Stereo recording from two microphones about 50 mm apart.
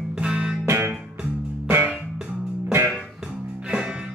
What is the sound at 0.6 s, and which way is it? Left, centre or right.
Music, right.